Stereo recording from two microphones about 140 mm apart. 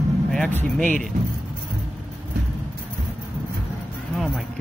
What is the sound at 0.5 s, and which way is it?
Speech, 15° left (ahead or behind).